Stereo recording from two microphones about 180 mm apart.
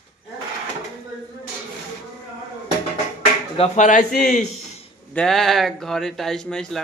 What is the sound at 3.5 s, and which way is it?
Speech, 35° left (ahead or behind).